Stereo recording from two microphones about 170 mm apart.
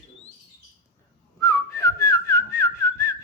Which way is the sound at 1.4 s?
15° left (ahead or behind).